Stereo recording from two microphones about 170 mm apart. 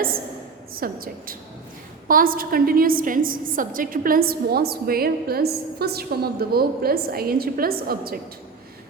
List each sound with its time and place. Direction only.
0.8 s a woman's voice: 60° right (ahead or behind)